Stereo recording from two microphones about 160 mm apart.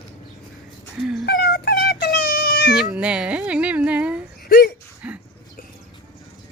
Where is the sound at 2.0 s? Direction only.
85° left.